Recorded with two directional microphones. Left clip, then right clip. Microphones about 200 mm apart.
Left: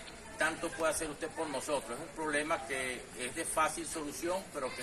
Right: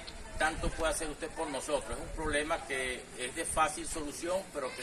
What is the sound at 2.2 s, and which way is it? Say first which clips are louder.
A man's voice: right 1 dB; centre (ahead or behind).